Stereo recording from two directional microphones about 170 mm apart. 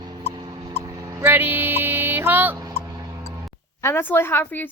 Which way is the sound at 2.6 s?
20° right (ahead or behind).